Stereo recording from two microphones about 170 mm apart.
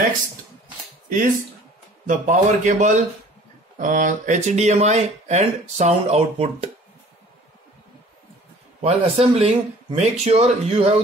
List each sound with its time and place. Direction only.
1.0 s a sound: 50° right (ahead or behind)
2.0 s a man's voice: 50° right (ahead or behind)
8.8 s speech: 35° right (ahead or behind)